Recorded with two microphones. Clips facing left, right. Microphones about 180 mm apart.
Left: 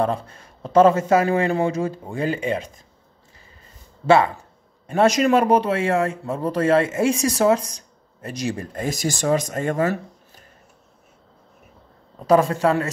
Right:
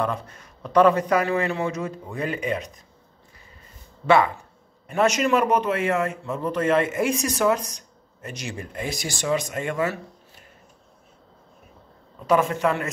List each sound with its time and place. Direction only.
0.0 s a man's voice: 30° left (ahead or behind)
4.0 s a man's voice: 30° left (ahead or behind)
12.2 s a man's voice: 35° left (ahead or behind)